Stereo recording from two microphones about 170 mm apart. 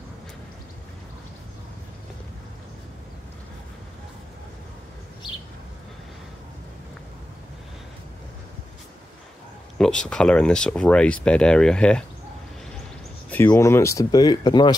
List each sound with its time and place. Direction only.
9.8 s speech: 5° left (ahead or behind)
13.5 s speech: 15° left (ahead or behind)